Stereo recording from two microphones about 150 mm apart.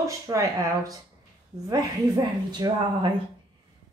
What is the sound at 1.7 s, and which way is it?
A woman's voice, 25° right (ahead or behind).